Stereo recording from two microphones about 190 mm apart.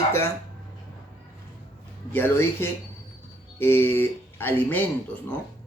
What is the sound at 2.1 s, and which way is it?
Speech, 10° left (ahead or behind).